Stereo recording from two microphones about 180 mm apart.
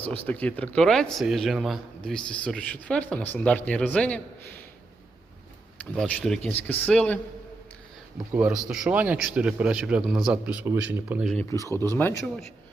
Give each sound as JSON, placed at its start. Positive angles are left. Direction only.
{"t": 0.3, "sound": "speech", "side_deg": 10}
{"t": 5.8, "sound": "speech", "side_deg": 5}
{"t": 8.3, "sound": "speech", "side_deg": -10}
{"t": 11.5, "sound": "speech", "side_deg": 15}